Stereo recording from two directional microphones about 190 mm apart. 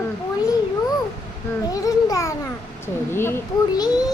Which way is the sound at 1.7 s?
20° left (ahead or behind).